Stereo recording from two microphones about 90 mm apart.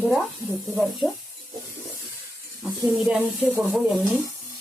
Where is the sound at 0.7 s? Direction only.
Centre (ahead or behind).